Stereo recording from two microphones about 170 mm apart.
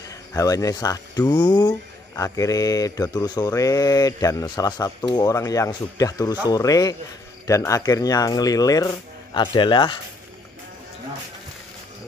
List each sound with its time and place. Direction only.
0.1 s speech: 20° left (ahead or behind)